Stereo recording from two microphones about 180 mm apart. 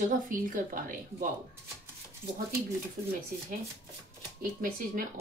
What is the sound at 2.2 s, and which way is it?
Speech, 10° right (ahead or behind).